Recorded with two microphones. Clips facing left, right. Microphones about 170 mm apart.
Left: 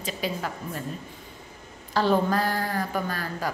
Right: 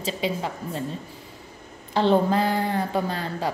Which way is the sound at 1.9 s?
25° right (ahead or behind).